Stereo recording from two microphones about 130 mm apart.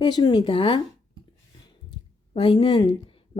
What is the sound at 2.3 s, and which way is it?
Speech, 45° left (ahead or behind).